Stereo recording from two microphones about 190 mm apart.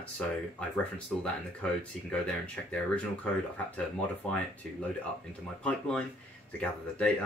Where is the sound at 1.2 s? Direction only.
5° left (ahead or behind).